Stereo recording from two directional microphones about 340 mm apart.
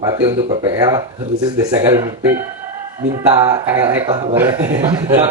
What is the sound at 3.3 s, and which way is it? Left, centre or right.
A man's voice, centre.